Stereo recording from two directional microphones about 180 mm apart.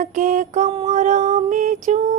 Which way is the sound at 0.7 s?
35° right (ahead or behind).